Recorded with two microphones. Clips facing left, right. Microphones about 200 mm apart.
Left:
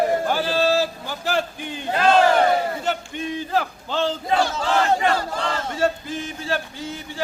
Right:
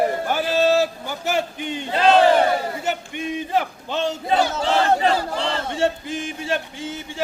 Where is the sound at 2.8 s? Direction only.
10° right (ahead or behind).